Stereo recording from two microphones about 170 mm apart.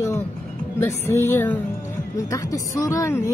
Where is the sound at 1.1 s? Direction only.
15° left (ahead or behind).